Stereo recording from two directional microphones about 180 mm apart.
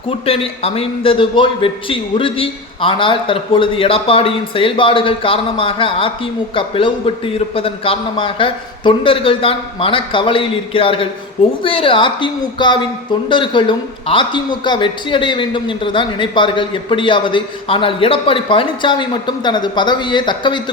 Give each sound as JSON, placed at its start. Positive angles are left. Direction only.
{"t": 0.1, "sound": "speech", "side_deg": 30}